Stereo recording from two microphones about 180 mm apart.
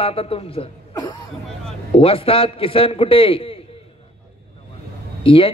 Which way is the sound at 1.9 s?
30° left (ahead or behind).